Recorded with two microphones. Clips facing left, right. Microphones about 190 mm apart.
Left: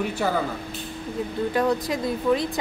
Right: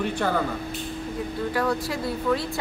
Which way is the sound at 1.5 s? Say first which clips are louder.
Left 3 dB; 20° left (ahead or behind).